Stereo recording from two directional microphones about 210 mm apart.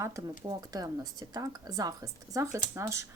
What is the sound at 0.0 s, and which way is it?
Speech, 15° right (ahead or behind).